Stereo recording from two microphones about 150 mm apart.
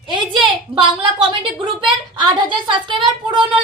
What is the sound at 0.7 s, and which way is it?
A woman's voice, 35° right (ahead or behind).